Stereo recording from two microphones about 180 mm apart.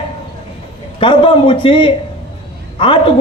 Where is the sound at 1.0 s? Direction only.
30° left (ahead or behind).